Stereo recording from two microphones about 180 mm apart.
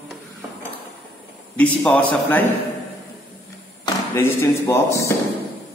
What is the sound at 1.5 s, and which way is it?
Speech, 5° left (ahead or behind).